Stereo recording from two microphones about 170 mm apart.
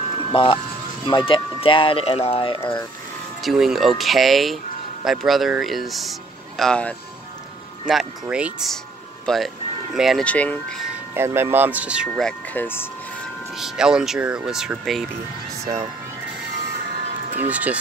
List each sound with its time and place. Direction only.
0.3 s speech: 30° left (ahead or behind)
3.4 s speech: centre (ahead or behind)
11.1 s speech: 15° right (ahead or behind); by 12.8 s 10° left (ahead or behind)
13.6 s speech: 5° right (ahead or behind)
17.4 s speech: 10° right (ahead or behind)